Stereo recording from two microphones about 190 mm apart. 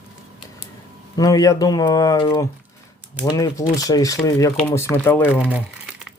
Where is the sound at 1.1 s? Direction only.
20° left (ahead or behind).